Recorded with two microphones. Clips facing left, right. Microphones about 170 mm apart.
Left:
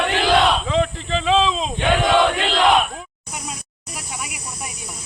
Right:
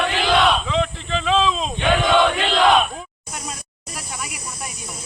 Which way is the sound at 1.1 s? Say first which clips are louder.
Left 1 dB; 25° left (ahead or behind).